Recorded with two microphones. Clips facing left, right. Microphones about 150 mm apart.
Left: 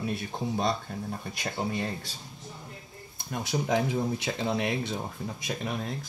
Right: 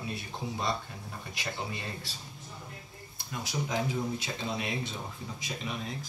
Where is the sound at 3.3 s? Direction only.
55° left (ahead or behind).